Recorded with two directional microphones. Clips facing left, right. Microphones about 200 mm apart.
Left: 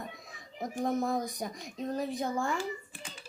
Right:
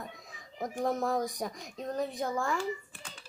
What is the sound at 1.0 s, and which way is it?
Speech, 90° right.